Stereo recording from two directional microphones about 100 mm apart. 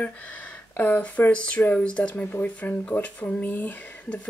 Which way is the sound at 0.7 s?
15° left (ahead or behind).